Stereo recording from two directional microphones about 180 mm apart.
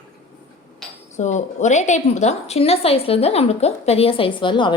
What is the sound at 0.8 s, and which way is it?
Cutlery, centre (ahead or behind).